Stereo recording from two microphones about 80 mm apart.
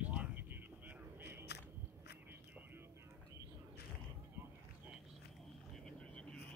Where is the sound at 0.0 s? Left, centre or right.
Centre.